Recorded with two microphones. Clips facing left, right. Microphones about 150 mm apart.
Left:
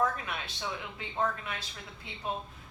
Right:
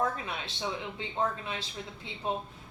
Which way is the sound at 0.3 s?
25° right (ahead or behind).